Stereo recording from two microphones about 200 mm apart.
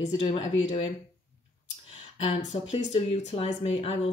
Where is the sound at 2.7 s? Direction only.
30° left (ahead or behind).